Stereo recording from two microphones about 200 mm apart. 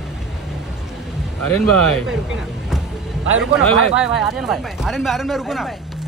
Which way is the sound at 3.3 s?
5° right (ahead or behind).